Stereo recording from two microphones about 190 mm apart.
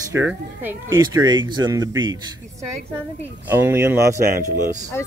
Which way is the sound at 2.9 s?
10° right (ahead or behind).